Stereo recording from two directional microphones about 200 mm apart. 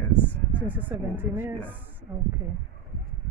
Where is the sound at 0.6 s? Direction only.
10° right (ahead or behind).